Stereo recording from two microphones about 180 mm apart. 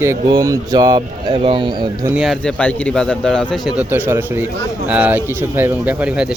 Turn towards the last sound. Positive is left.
turn(degrees=-5)  # may be behind; listen again after turning